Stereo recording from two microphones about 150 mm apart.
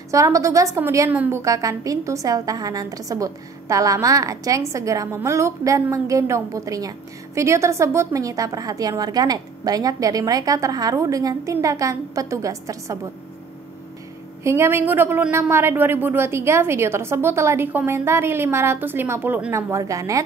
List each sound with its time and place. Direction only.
0.1 s a woman's voice: 20° right (ahead or behind)
14.4 s a woman's voice: 20° right (ahead or behind)